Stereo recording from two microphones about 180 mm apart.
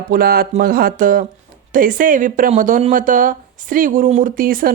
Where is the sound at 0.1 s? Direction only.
55° right (ahead or behind).